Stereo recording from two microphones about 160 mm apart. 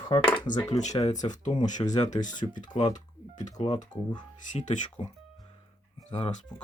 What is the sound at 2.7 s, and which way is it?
Speech, 25° left (ahead or behind).